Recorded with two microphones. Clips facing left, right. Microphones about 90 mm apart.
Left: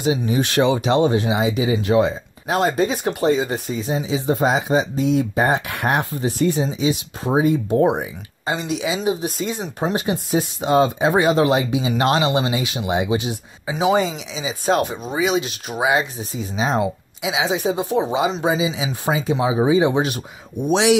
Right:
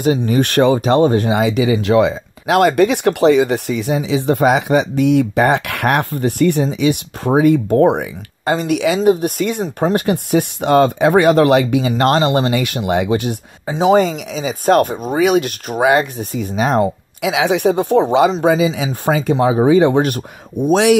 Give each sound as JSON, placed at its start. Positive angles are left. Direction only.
{"t": 0.2, "sound": "speech", "side_deg": -55}
{"t": 12.0, "sound": "speech", "side_deg": -50}
{"t": 13.7, "sound": "speech", "side_deg": -40}